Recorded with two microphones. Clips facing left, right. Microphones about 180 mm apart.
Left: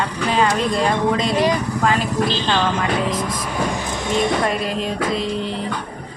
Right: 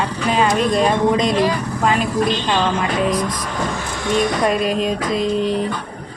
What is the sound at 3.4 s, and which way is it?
Speech, 20° left (ahead or behind).